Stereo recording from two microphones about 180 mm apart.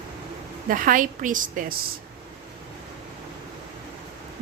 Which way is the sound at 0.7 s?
50° right (ahead or behind).